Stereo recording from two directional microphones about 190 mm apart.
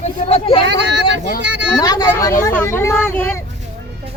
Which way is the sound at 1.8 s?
20° left (ahead or behind).